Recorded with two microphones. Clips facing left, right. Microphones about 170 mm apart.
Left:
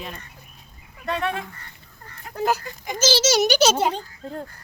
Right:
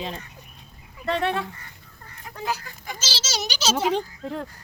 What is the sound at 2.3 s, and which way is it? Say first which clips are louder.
A child's voice: left 7 dB; 45° left (ahead or behind).